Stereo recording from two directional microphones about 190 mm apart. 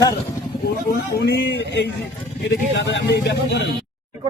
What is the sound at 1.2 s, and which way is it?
Speech, 60° left (ahead or behind).